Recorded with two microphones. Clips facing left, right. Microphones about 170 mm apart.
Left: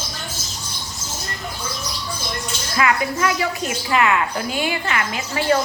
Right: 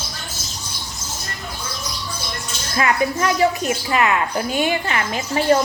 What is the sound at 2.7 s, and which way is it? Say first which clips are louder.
A woman's voice: right 1 dB; 35° right (ahead or behind).